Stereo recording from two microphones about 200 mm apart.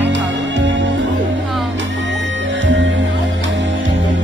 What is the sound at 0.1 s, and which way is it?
Music, 65° right (ahead or behind).